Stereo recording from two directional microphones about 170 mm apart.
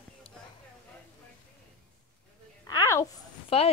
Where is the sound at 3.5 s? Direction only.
35° left (ahead or behind).